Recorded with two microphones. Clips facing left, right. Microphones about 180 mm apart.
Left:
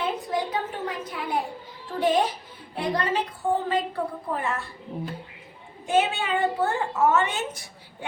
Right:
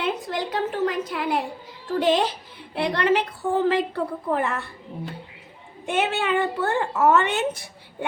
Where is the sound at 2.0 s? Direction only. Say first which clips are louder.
Right 1 dB; 85° right; by 4.6 s 65° right (ahead or behind).